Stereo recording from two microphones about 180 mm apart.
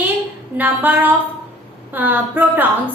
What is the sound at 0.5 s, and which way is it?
A woman's voice, 10° right (ahead or behind).